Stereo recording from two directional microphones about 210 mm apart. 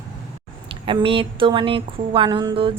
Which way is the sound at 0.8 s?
25° right (ahead or behind).